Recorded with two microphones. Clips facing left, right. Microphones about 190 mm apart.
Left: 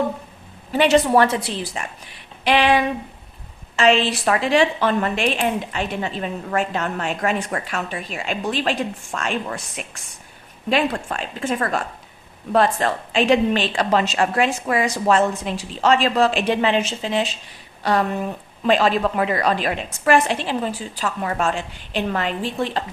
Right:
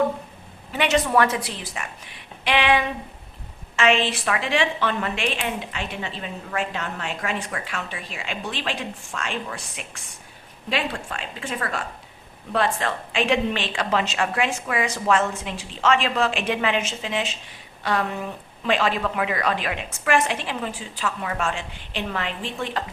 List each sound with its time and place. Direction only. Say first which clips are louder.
0.7 s a woman's voice: left 5 dB; 35° left (ahead or behind)
2.4 s a sound: left 4 dB; 35° left (ahead or behind)
3.8 s a woman's voice: left 4 dB; 35° left (ahead or behind)
18.6 s a woman's voice: left 5 dB; 35° left (ahead or behind)